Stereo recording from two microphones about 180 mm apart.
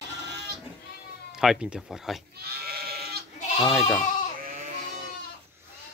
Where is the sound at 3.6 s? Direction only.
5° left (ahead or behind).